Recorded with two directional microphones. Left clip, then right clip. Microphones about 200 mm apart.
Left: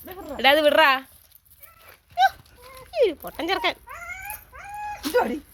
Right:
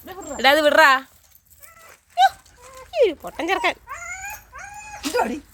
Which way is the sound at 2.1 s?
5° right (ahead or behind).